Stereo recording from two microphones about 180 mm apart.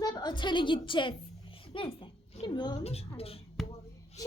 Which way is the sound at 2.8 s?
35° left (ahead or behind).